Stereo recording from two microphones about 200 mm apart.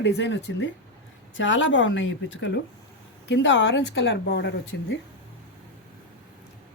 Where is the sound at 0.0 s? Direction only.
60° left (ahead or behind).